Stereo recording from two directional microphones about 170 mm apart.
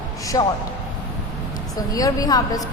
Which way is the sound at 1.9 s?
20° left (ahead or behind).